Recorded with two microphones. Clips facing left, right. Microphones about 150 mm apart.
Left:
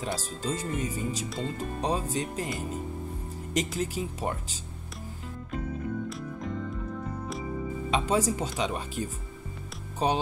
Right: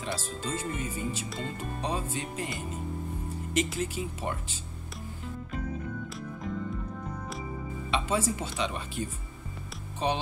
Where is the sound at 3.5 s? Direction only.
40° left (ahead or behind).